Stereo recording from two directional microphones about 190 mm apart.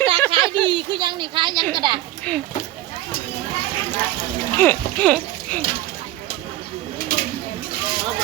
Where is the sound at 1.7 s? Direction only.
25° right (ahead or behind).